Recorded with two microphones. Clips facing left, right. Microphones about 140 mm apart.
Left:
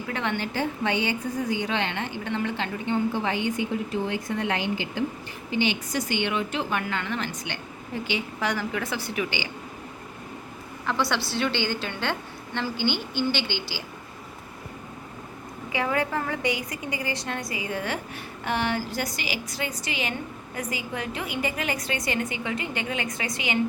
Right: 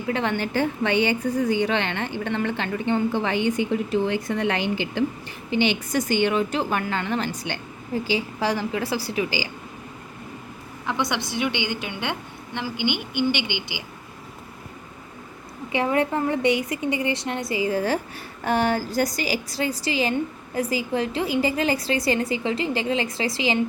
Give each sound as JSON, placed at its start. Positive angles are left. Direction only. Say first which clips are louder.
{"t": 0.1, "sound": "a woman's voice", "louder": "right 5 dB", "side_deg": -35}
{"t": 0.9, "sound": "a woman's voice", "louder": "right 5 dB", "side_deg": -70}
{"t": 4.1, "sound": "a woman's voice", "louder": "right 3 dB", "side_deg": -85}
{"t": 5.9, "sound": "a woman's voice", "louder": "right 5 dB", "side_deg": -45}
{"t": 10.8, "sound": "a woman's voice", "louder": "even", "side_deg": -20}
{"t": 15.7, "sound": "a woman's voice", "louder": "right 4 dB", "side_deg": -25}